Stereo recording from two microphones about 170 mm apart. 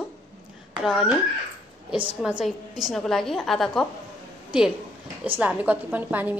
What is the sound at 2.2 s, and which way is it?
A woman's voice, 5° right (ahead or behind).